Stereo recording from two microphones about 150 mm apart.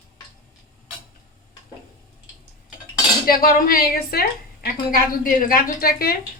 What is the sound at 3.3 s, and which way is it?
Speech, 70° left (ahead or behind).